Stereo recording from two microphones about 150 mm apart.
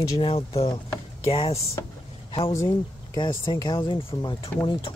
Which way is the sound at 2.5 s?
20° left (ahead or behind).